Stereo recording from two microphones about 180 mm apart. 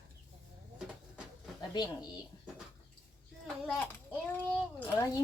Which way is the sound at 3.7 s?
10° left (ahead or behind).